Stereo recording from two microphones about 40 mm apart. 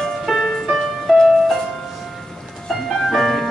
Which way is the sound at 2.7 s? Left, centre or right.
Centre.